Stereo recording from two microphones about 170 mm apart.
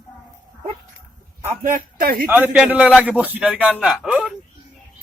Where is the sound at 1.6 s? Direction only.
55° right (ahead or behind).